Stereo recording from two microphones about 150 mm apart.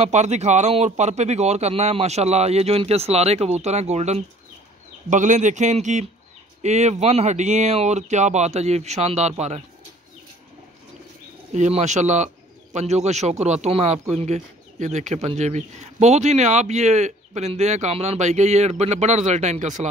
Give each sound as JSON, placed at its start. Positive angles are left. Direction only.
{"t": 0.0, "sound": "speech", "side_deg": -50}
{"t": 11.5, "sound": "speech", "side_deg": -50}